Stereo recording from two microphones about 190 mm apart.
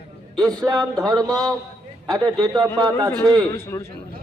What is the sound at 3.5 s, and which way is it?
Speech, 15° left (ahead or behind).